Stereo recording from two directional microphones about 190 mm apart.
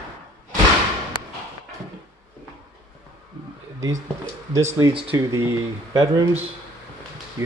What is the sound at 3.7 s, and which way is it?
Speech, 15° right (ahead or behind).